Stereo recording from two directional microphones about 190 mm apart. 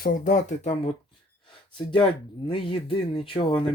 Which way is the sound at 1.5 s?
25° left (ahead or behind).